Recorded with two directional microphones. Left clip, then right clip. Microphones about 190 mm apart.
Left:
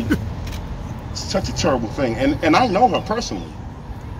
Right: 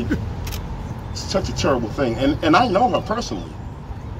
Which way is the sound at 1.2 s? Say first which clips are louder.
Even; 15° left (ahead or behind).